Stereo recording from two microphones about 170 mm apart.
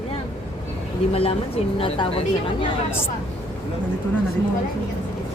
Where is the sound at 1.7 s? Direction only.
35° left (ahead or behind).